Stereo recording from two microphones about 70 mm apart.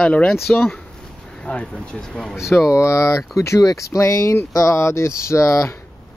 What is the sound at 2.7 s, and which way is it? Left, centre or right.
Speech, left.